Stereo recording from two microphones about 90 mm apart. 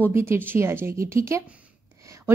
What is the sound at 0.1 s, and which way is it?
A woman's voice, 25° right (ahead or behind).